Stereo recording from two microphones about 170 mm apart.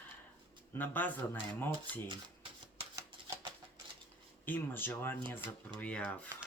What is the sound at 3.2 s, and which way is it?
Typewriter, 25° right (ahead or behind).